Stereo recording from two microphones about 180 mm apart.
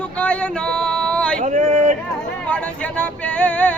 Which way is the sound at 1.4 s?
45° right (ahead or behind).